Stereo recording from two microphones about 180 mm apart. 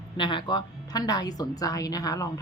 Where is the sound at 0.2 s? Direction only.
25° left (ahead or behind).